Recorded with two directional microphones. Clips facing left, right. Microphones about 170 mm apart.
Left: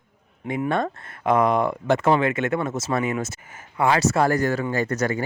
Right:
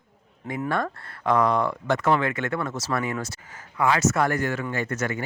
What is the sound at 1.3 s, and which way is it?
Speech, 20° left (ahead or behind).